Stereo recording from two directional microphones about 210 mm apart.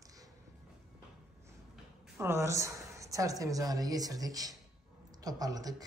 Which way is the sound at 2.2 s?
10° right (ahead or behind).